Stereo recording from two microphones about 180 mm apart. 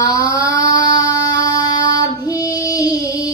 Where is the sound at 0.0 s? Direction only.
20° left (ahead or behind).